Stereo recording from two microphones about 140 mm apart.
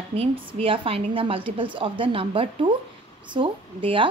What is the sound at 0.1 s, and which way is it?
A woman's voice, 45° right (ahead or behind).